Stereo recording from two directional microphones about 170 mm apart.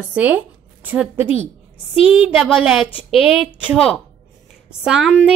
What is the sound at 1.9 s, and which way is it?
Speech, 35° left (ahead or behind).